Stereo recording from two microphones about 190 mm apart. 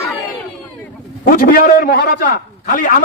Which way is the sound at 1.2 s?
50° left (ahead or behind).